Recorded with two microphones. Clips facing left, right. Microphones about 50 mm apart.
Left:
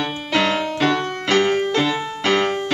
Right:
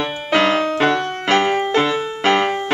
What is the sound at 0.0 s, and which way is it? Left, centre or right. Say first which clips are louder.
Music: right 3 dB; right.